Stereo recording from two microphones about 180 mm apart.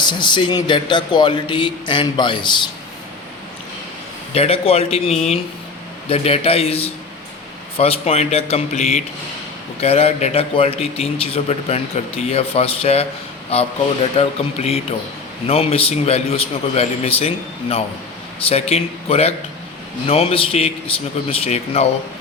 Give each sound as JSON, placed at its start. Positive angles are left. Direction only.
{"t": 0.0, "sound": "speech", "side_deg": 25}
{"t": 4.4, "sound": "a man's voice", "side_deg": 30}